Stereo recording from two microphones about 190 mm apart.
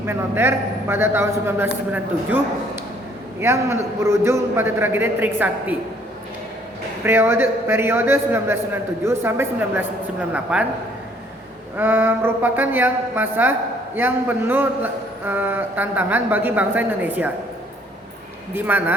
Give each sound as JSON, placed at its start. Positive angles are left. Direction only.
{"t": 0.0, "sound": "a woman's voice", "side_deg": -10}
{"t": 3.4, "sound": "a woman's voice", "side_deg": -15}
{"t": 7.0, "sound": "a woman's voice", "side_deg": -10}
{"t": 11.8, "sound": "a woman's voice", "side_deg": -10}
{"t": 18.5, "sound": "a woman's voice", "side_deg": -10}